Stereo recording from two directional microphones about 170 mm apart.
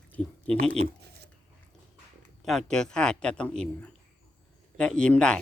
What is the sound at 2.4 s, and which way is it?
A man's voice, 5° left (ahead or behind).